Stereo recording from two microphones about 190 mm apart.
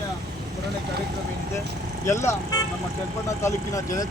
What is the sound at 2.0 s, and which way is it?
Speech, 15° left (ahead or behind).